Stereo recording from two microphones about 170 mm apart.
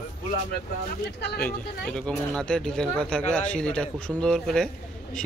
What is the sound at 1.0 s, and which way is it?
Speech, 80° left.